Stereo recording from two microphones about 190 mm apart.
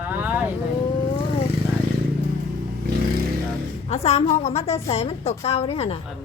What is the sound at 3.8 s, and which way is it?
A woman's voice, 35° left (ahead or behind).